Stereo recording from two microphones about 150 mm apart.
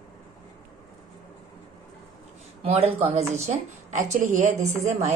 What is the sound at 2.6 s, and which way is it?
A woman's voice, 40° right (ahead or behind).